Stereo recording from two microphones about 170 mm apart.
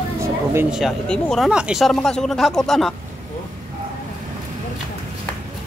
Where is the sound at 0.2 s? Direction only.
15° right (ahead or behind).